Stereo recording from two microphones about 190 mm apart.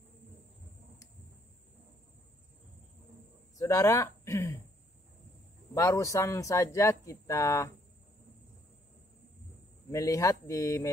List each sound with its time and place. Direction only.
3.5 s speech: 15° left (ahead or behind)
5.8 s speech: 15° left (ahead or behind)
9.8 s speech: 15° left (ahead or behind)